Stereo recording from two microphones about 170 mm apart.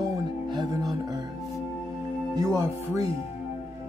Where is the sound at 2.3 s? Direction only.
20° right (ahead or behind).